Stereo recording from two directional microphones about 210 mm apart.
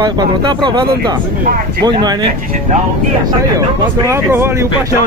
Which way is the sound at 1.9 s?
20° right (ahead or behind).